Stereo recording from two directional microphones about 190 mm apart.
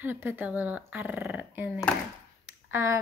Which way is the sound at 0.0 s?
10° right (ahead or behind).